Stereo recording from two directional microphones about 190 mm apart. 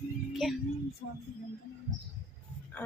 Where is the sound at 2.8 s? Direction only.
10° left (ahead or behind).